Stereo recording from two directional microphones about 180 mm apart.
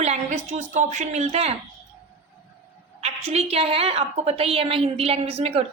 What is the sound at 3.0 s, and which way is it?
Speech, 35° right (ahead or behind).